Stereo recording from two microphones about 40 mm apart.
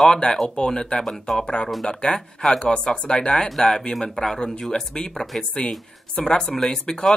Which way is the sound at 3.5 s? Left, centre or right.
Centre.